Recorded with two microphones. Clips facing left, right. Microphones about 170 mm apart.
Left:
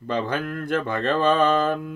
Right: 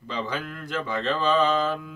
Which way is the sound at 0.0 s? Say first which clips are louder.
Left 5 dB; 55° left (ahead or behind).